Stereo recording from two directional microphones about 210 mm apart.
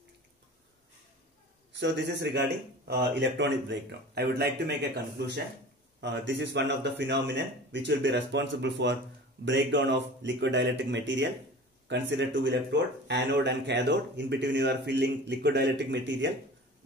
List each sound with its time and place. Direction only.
1.8 s a man's voice: 55° right (ahead or behind)
5.9 s speech: 55° right (ahead or behind)